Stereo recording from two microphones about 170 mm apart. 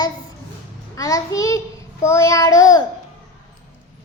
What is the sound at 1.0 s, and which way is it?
Child singing, 20° left (ahead or behind).